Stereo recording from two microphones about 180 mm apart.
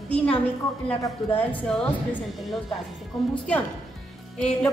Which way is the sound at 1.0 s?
10° left (ahead or behind).